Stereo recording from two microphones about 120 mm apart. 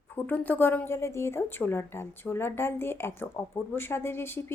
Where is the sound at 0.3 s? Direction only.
15° left (ahead or behind).